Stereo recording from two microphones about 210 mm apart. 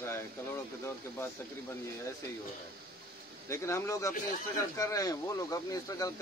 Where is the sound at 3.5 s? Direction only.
15° left (ahead or behind).